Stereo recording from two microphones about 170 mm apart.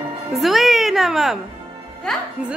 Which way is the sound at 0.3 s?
Centre (ahead or behind).